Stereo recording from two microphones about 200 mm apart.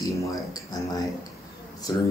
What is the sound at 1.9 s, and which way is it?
Speech, 20° left (ahead or behind).